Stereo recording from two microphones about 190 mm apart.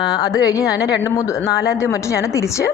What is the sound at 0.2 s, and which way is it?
A woman's voice, 20° left (ahead or behind).